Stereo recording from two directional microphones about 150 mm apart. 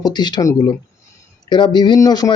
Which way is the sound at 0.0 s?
30° left (ahead or behind).